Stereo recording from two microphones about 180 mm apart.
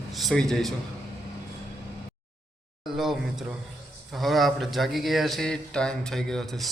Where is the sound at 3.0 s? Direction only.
Centre (ahead or behind).